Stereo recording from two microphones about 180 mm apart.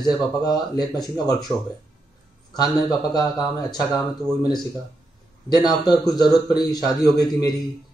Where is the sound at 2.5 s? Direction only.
20° left (ahead or behind).